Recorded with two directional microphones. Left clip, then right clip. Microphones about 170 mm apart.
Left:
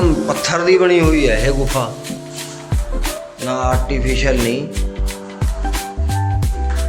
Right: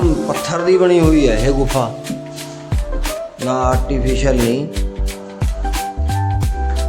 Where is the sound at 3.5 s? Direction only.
40° right (ahead or behind).